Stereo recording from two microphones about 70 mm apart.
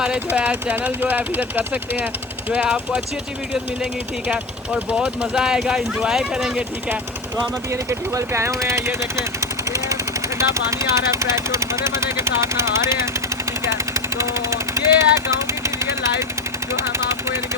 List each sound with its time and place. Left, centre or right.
0.0 s speech: centre
4.3 s speech: centre
6.6 s speech: right
7.7 s speech: right
13.7 s jackhammer: right
16.7 s speech: right